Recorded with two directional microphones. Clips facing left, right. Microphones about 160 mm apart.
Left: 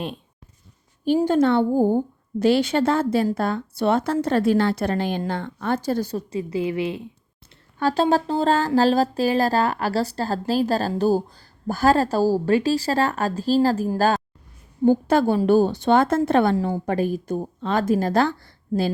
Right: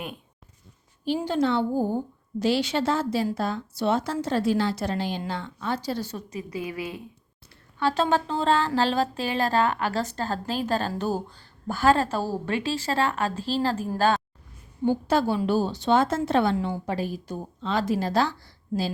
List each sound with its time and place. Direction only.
1.0 s a woman's voice: 50° left (ahead or behind); by 7.1 s 25° left (ahead or behind)
7.8 s speech: 40° left (ahead or behind)
14.8 s a woman's voice: 50° left (ahead or behind)